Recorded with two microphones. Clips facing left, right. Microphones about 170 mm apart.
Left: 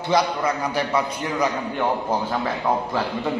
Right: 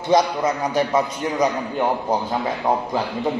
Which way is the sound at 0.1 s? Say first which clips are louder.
Right 3 dB; 20° right (ahead or behind).